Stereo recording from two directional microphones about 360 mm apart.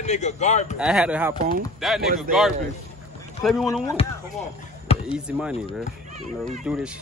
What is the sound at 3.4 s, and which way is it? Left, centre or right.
Speech, centre.